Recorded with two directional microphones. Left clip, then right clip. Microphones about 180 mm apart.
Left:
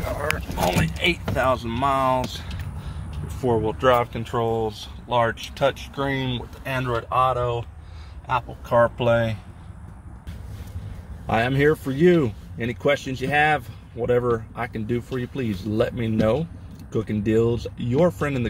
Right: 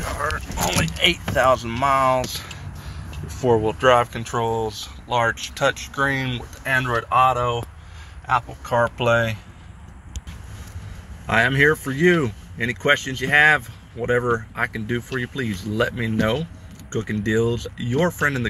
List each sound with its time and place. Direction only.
0.7 s speech: 25° left (ahead or behind)
1.3 s speech: centre (ahead or behind)
3.3 s speech: 15° right (ahead or behind)
4.0 s speech: 15° left (ahead or behind)
6.6 s speech: 5° left (ahead or behind)
6.9 s speech: 10° right (ahead or behind)
8.3 s speech: 10° left (ahead or behind)
11.2 s speech: 5° left (ahead or behind)